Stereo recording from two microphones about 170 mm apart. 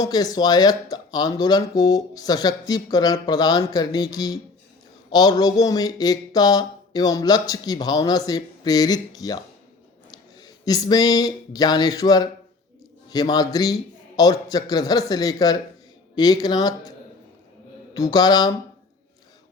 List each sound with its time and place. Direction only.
0.0 s speech: 20° left (ahead or behind)
17.9 s speech: 20° left (ahead or behind)